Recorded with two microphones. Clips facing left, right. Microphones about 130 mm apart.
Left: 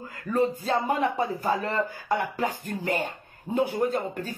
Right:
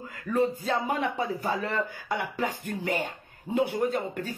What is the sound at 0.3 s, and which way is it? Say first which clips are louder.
Speech: left 1 dB; 40° left (ahead or behind).